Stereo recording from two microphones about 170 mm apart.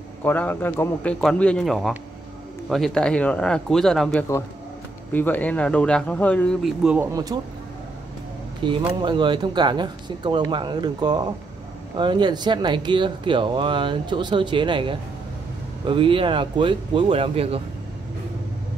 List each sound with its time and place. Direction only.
0.2 s speech: 10° left (ahead or behind); by 7.1 s 5° right (ahead or behind)
7.1 s speech: 20° right (ahead or behind)
8.6 s speech: 30° right (ahead or behind)